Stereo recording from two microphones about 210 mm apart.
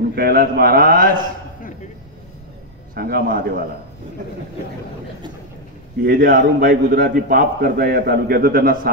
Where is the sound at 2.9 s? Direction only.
45° right (ahead or behind).